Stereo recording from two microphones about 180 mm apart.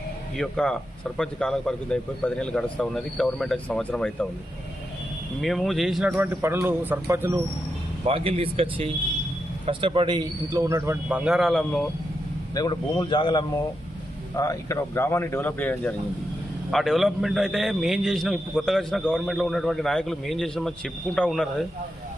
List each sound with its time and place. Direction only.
0.3 s a man's voice: 5° left (ahead or behind)
5.4 s speech: centre (ahead or behind); by 7.4 s 15° right (ahead or behind)
8.0 s a man's voice: 30° right (ahead or behind); by 11.2 s 15° right (ahead or behind)
11.3 s a man's voice: centre (ahead or behind)
12.5 s a man's voice: 25° left (ahead or behind); by 21.7 s centre (ahead or behind)